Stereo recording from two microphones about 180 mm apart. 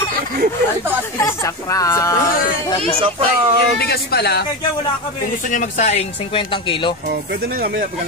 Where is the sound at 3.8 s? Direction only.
60° left (ahead or behind).